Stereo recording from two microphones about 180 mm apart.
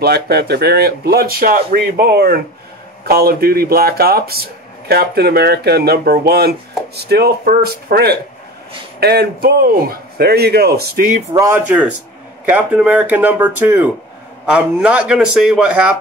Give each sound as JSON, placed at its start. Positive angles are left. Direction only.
{"t": 0.0, "sound": "speech", "side_deg": -60}
{"t": 11.3, "sound": "a man's voice", "side_deg": -15}